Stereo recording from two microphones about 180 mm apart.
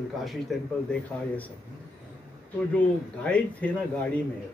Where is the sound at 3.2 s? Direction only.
5° left (ahead or behind).